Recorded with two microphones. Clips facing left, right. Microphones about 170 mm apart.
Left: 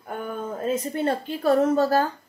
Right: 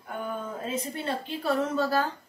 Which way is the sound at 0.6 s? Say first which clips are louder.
Left 11 dB; 45° left (ahead or behind).